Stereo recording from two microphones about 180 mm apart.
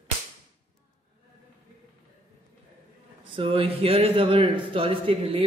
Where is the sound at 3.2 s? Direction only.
30° right (ahead or behind).